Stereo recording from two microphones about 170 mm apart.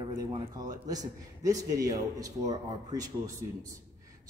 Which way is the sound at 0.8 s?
20° right (ahead or behind).